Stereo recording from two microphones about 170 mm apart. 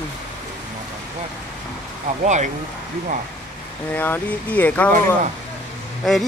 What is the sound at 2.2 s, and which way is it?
Speech, 45° right (ahead or behind).